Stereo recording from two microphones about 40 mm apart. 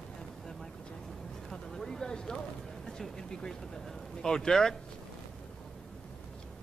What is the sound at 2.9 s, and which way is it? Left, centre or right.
Speech, centre.